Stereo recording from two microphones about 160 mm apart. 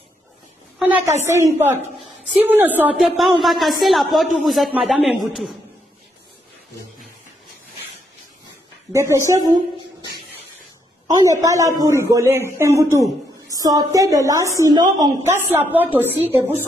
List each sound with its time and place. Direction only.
0.7 s a sound: 10° right (ahead or behind)
1.2 s a man's voice: 15° right (ahead or behind)
8.9 s a man's voice: 20° right (ahead or behind)
11.1 s a man's voice: 20° right (ahead or behind)
15.3 s a man's voice: 15° right (ahead or behind)